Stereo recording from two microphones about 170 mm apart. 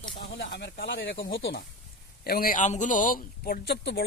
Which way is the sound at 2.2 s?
60° left (ahead or behind).